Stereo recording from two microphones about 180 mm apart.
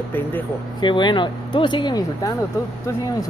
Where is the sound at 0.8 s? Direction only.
25° left (ahead or behind).